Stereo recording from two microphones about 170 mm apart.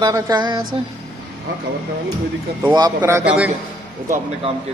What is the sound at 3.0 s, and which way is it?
Speech, 15° right (ahead or behind).